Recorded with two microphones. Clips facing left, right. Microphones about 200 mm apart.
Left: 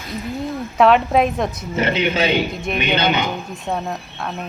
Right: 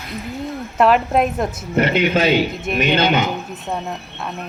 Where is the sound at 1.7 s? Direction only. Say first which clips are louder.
Right 4 dB; 55° right (ahead or behind).